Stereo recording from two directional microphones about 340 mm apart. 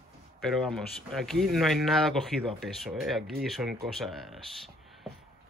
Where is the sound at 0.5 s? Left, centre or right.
Centre.